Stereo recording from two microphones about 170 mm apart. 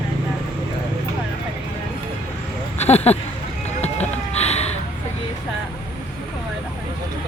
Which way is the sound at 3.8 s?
40° left (ahead or behind).